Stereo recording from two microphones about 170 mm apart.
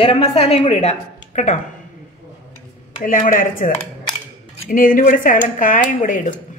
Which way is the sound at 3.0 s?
50° left (ahead or behind).